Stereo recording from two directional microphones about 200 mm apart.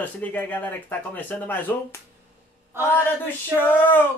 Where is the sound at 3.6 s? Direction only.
10° left (ahead or behind).